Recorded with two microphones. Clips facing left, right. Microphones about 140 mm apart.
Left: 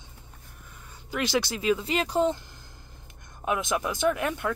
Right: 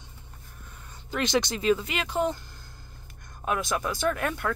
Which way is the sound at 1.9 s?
35° left (ahead or behind).